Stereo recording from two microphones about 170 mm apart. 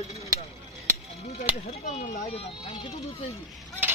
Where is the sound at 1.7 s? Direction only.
45° left (ahead or behind).